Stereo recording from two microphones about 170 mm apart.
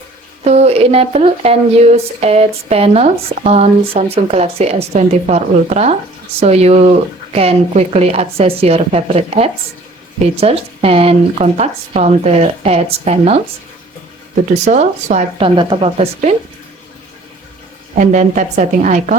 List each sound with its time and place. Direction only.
0.4 s speech: 40° right (ahead or behind)
14.6 s a woman's voice: 45° right (ahead or behind)
15.4 s speech: 30° right (ahead or behind)
17.9 s a woman's voice: 45° right (ahead or behind)